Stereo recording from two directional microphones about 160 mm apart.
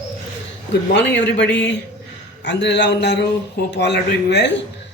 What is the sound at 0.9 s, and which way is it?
A man's voice, 90° left.